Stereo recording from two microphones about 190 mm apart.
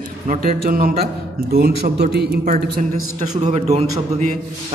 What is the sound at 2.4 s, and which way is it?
Speech, 40° right (ahead or behind).